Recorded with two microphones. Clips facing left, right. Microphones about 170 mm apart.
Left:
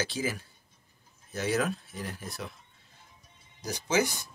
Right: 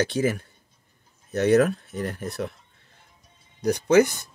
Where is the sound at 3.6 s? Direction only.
60° right (ahead or behind).